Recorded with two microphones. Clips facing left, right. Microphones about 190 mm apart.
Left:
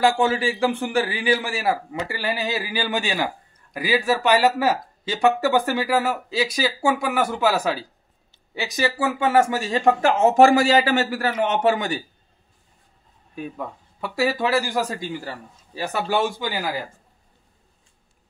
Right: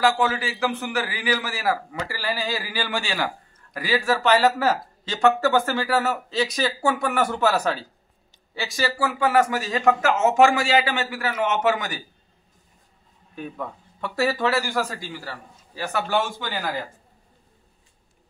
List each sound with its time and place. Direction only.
0.0 s a man's voice: 25° left (ahead or behind)
13.6 s speech: 10° left (ahead or behind)